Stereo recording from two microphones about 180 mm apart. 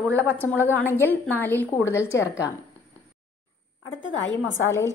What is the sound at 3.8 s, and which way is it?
Speech, 90° left.